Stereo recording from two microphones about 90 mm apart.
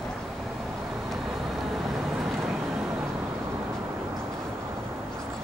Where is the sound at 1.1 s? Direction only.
Centre (ahead or behind).